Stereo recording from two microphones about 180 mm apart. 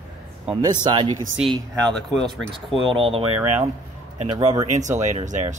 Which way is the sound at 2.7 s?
30° right (ahead or behind).